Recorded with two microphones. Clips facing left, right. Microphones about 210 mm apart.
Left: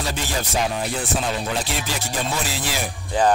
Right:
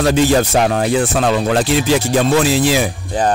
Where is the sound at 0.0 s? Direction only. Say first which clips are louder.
Right 14 dB; 80° right.